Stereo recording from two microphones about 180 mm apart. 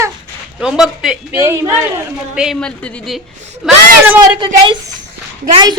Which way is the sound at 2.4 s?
Centre (ahead or behind).